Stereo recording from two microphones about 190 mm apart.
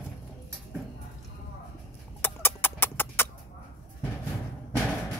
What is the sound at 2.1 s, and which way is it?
Music, 10° left (ahead or behind).